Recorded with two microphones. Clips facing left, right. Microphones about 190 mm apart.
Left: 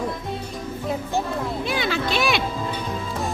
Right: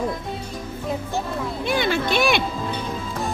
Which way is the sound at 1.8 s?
55° right (ahead or behind).